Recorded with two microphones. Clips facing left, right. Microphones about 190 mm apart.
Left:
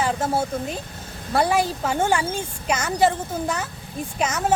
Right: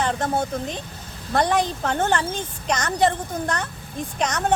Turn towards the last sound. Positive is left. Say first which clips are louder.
# even
turn(degrees=5)  # may be behind; listen again after turning